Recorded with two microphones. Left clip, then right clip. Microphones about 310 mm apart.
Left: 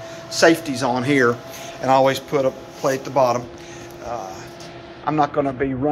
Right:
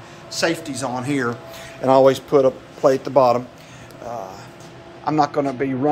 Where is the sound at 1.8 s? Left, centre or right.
Centre.